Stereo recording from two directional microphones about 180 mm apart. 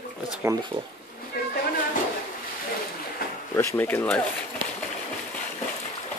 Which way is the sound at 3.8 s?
10° left (ahead or behind).